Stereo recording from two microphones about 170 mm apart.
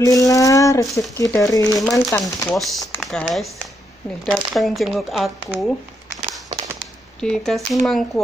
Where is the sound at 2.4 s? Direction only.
Centre (ahead or behind).